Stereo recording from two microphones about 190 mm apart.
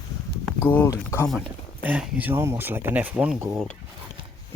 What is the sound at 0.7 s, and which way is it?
Speech, 10° left (ahead or behind).